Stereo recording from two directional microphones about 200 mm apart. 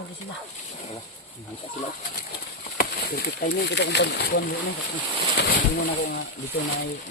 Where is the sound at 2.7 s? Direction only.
50° left (ahead or behind).